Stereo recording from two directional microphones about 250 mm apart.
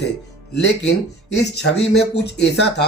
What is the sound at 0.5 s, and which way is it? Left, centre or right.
Speech, left.